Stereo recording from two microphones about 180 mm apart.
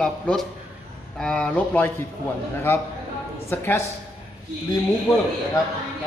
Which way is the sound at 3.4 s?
10° left (ahead or behind).